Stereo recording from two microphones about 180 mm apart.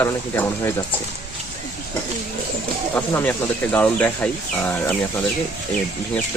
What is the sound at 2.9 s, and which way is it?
Speech, 10° left (ahead or behind).